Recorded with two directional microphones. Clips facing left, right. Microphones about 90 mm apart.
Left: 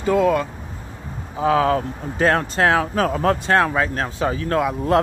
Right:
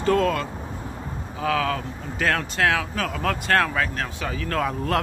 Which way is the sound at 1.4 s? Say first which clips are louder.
Left 7 dB; 30° left (ahead or behind).